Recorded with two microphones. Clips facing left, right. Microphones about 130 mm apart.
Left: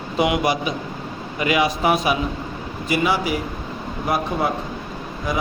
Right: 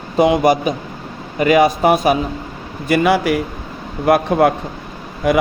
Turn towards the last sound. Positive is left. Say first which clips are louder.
# right 9 dB
turn(degrees=-70)  # may be behind; listen again after turning